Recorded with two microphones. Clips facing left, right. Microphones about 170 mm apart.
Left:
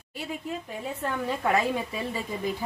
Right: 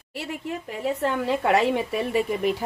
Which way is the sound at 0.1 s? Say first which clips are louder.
Right 3 dB; 70° right (ahead or behind).